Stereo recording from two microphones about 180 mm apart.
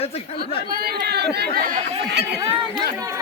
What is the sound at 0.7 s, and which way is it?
Speech, 60° right (ahead or behind).